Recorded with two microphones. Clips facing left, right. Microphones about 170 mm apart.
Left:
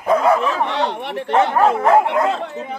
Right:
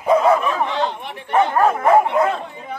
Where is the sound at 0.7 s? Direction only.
70° left (ahead or behind).